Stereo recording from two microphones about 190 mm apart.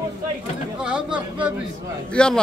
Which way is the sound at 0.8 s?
5° right (ahead or behind).